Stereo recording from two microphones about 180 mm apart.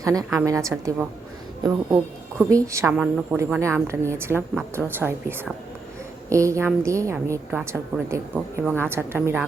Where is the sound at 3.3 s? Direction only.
15° right (ahead or behind).